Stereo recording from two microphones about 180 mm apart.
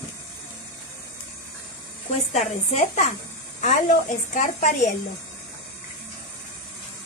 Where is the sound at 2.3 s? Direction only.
40° left (ahead or behind).